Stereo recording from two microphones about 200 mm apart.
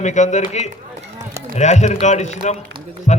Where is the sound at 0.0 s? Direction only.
35° left (ahead or behind).